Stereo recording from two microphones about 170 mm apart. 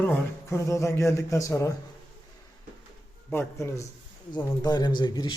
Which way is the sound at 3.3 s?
15° left (ahead or behind).